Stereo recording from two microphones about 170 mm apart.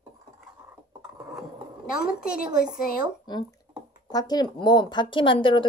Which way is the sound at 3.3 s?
25° left (ahead or behind).